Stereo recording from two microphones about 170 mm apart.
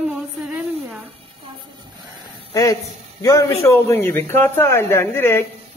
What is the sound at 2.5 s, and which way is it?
A man's voice, 20° left (ahead or behind).